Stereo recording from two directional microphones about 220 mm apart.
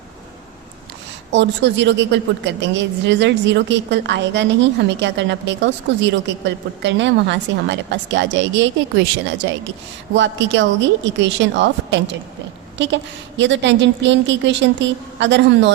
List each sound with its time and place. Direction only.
1.3 s a woman's voice: 55° right (ahead or behind)